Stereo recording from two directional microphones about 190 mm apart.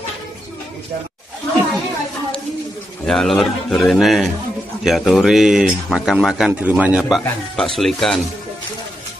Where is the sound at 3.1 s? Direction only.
Centre (ahead or behind).